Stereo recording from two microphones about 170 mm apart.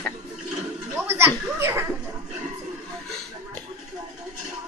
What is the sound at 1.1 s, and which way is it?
Speech, 15° right (ahead or behind).